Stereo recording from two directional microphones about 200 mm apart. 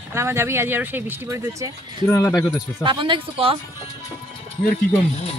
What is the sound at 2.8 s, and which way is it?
Speech, 25° right (ahead or behind).